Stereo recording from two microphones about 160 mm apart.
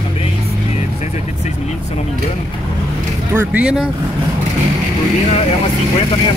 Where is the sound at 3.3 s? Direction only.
10° right (ahead or behind).